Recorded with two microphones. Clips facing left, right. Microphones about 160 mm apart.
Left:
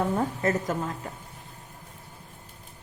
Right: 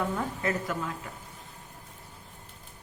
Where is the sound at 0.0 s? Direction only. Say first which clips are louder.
Left 5 dB; 35° left (ahead or behind).